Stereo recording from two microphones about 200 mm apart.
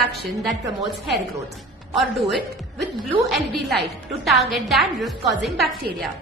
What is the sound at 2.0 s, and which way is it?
A woman's voice, centre (ahead or behind).